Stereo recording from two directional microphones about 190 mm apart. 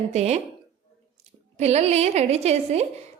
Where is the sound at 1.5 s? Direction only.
35° right (ahead or behind).